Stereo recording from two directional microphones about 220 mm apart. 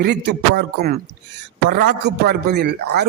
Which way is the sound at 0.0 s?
45° right (ahead or behind).